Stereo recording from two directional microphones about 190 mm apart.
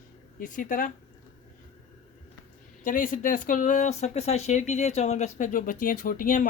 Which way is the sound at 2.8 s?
45° left (ahead or behind).